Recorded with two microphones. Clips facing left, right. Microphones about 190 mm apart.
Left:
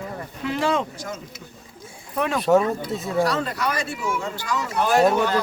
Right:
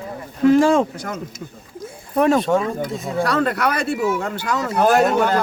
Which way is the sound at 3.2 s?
60° right (ahead or behind).